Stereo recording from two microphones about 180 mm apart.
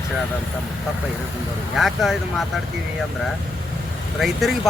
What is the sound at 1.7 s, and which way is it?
Speech, centre (ahead or behind).